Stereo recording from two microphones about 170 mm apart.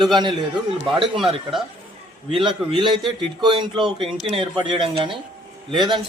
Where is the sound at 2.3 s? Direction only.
30° right (ahead or behind).